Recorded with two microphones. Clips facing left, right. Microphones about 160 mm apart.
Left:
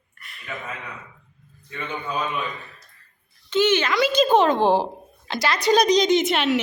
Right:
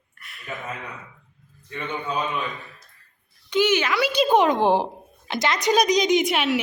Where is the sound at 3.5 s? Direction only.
10° right (ahead or behind).